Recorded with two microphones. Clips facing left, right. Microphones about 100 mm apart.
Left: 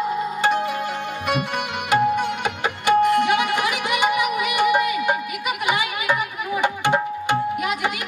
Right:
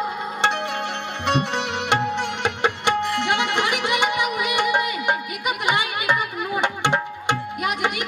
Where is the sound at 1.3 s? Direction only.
30° right (ahead or behind).